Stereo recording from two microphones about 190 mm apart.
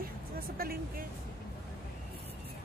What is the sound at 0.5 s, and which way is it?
Speech, 50° right (ahead or behind).